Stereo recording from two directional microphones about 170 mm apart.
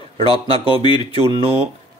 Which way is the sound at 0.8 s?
25° left (ahead or behind).